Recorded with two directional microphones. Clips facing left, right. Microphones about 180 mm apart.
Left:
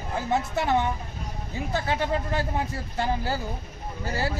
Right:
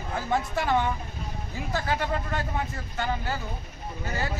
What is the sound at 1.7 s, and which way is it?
Speech, 25° left (ahead or behind).